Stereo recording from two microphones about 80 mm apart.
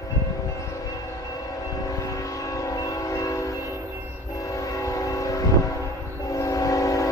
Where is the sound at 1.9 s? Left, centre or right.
Left.